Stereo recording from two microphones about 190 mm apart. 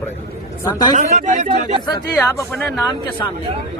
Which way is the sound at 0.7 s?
20° left (ahead or behind).